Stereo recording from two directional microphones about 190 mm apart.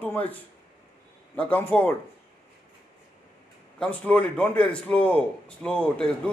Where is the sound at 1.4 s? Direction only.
10° left (ahead or behind).